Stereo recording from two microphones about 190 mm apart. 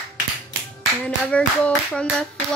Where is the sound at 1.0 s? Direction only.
5° left (ahead or behind).